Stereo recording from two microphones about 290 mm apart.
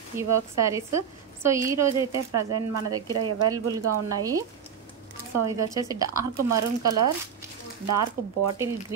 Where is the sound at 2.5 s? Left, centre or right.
Right.